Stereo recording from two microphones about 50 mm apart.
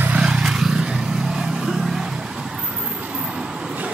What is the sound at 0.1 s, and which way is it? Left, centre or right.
Vehicle, centre.